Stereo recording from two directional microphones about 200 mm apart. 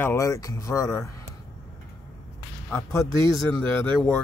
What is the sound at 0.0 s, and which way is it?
Speech, 15° left (ahead or behind).